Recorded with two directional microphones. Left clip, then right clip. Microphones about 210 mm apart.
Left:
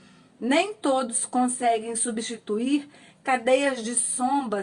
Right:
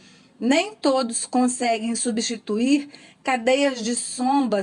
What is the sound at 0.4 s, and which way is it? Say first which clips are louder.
A woman's voice: right 2 dB; 30° right (ahead or behind).